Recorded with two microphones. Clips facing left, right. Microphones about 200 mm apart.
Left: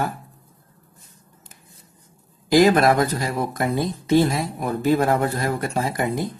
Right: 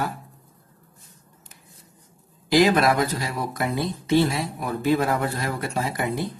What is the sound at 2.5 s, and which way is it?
Speech, 45° left (ahead or behind).